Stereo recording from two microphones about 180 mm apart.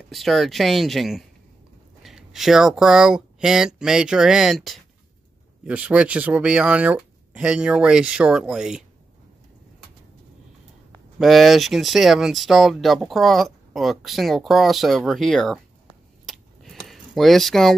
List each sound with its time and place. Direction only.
0.1 s speech: centre (ahead or behind)
11.1 s speech: centre (ahead or behind)
16.3 s a sound: centre (ahead or behind)